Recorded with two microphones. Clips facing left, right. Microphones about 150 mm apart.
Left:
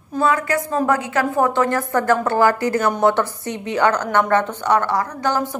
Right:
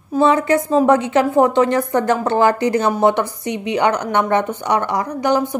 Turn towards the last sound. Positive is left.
turn(degrees=-15)  # may be behind; listen again after turning